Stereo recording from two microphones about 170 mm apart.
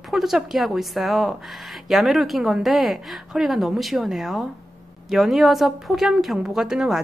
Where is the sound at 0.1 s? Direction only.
Centre (ahead or behind).